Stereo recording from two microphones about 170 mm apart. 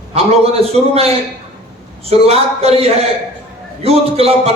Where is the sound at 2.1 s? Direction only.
35° right (ahead or behind).